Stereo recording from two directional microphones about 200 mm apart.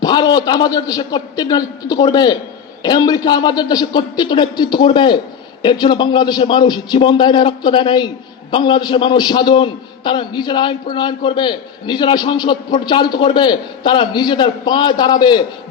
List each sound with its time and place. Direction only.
0.0 s a man's voice: 20° left (ahead or behind)